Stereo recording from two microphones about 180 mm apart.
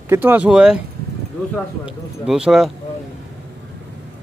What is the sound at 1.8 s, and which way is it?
Speech, 5° right (ahead or behind).